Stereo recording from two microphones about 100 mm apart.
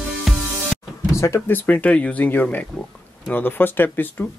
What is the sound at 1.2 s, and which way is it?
Speech, 25° left (ahead or behind).